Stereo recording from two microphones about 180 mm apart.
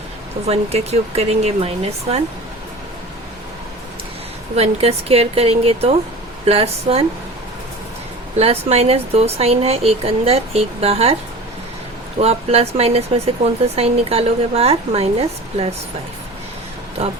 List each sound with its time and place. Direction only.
0.4 s speech: 35° right (ahead or behind)
4.5 s speech: 35° right (ahead or behind)
8.4 s speech: 35° right (ahead or behind)
12.2 s speech: 35° right (ahead or behind)